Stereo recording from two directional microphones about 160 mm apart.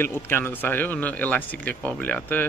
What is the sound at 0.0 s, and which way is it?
Speech, 15° left (ahead or behind).